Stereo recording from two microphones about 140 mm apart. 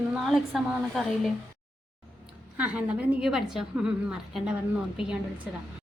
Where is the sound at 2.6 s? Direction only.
10° right (ahead or behind).